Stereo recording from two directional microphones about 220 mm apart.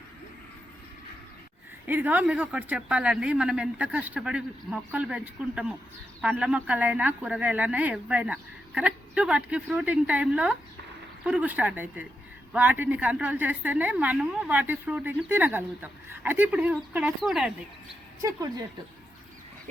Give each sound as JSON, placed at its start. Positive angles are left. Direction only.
{"t": 1.9, "sound": "a woman's voice", "side_deg": -10}
{"t": 18.2, "sound": "a woman's voice", "side_deg": -15}